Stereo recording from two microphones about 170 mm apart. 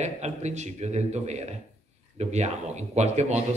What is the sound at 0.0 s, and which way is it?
A man's voice, 40° right (ahead or behind).